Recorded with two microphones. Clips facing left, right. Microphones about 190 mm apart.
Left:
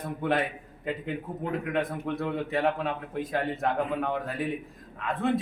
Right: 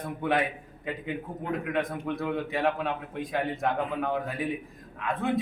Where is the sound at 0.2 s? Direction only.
Centre (ahead or behind).